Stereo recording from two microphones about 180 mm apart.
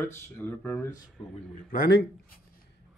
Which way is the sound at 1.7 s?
55° left (ahead or behind).